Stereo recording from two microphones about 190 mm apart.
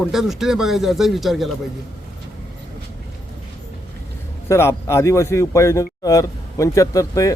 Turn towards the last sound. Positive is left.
turn(degrees=15)  # may be behind; listen again after turning